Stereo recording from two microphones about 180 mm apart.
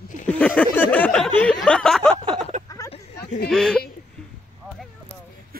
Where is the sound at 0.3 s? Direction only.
5° left (ahead or behind).